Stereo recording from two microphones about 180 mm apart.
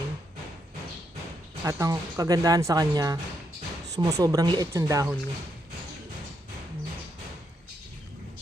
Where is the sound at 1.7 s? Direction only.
20° right (ahead or behind).